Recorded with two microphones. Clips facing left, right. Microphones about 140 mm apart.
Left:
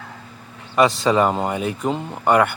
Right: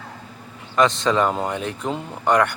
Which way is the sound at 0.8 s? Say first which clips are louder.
Left 2 dB; 10° left (ahead or behind).